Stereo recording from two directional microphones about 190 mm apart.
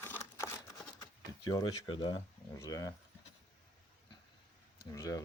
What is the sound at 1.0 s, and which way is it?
Speech, 20° left (ahead or behind).